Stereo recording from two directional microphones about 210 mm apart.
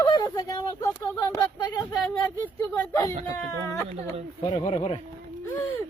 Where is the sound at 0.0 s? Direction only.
20° left (ahead or behind).